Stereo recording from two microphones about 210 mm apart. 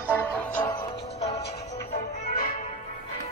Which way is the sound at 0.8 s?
30° left (ahead or behind).